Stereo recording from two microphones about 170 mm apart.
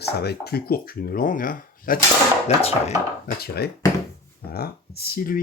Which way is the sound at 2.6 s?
35° left (ahead or behind).